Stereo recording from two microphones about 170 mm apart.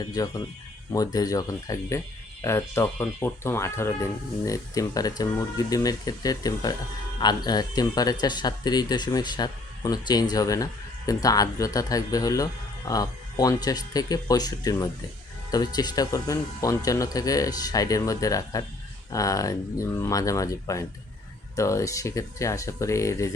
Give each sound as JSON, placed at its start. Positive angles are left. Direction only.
{"t": 0.0, "sound": "speech", "side_deg": 20}